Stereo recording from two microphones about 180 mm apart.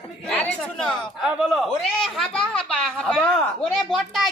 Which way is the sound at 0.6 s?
5° left (ahead or behind).